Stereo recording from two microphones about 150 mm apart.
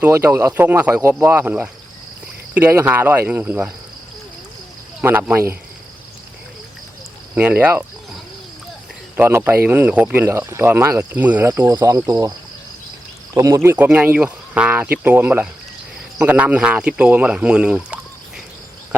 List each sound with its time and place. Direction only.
0.0 s speech: 15° right (ahead or behind)
4.9 s speech: 10° right (ahead or behind)
7.3 s speech: 10° right (ahead or behind)
9.1 s speech: 15° right (ahead or behind)
13.3 s speech: 20° right (ahead or behind)